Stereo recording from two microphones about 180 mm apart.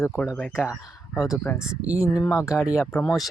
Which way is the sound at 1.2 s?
15° left (ahead or behind).